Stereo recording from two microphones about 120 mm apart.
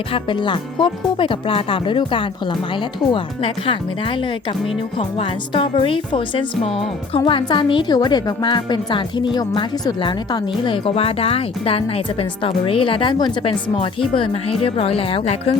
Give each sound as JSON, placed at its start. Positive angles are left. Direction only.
{"t": 0.1, "sound": "a woman's voice", "side_deg": 40}